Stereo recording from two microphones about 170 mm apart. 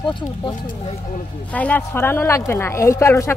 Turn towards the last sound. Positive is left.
turn(degrees=15)  # may be behind; listen again after turning